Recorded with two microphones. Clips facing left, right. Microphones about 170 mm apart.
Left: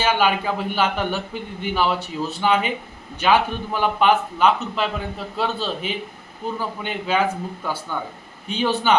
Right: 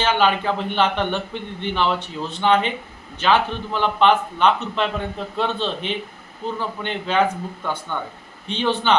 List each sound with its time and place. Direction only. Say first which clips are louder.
0.0 s a man's voice: right 1 dB; 10° left (ahead or behind)